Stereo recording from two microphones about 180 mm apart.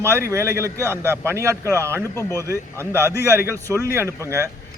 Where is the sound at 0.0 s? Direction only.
15° right (ahead or behind).